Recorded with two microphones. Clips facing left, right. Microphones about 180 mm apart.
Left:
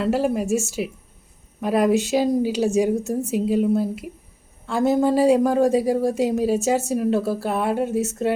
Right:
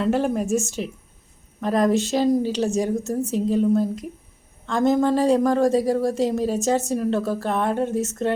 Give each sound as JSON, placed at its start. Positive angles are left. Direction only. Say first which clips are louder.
{"t": 0.0, "sound": "a woman's voice", "louder": "even", "side_deg": 5}